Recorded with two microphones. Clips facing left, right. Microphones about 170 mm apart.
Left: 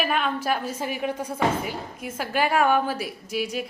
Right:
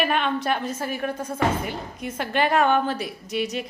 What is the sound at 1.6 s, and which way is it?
A woman's voice, 5° left (ahead or behind).